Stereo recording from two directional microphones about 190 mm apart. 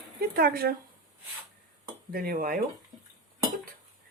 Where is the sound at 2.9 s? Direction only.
Centre (ahead or behind).